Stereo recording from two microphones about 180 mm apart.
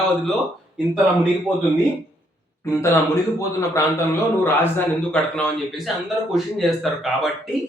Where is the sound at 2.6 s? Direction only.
15° left (ahead or behind).